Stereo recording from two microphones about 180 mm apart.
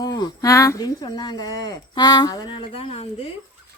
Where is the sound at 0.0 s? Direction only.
20° left (ahead or behind).